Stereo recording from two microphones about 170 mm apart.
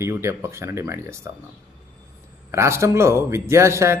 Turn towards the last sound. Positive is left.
turn(degrees=-15)  # may be behind; listen again after turning